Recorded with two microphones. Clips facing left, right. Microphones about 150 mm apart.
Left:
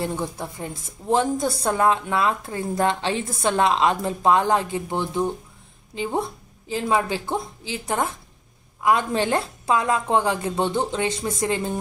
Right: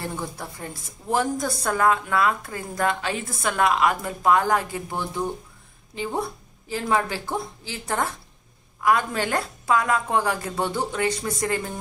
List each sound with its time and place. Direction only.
0.0 s a woman's voice: 20° left (ahead or behind)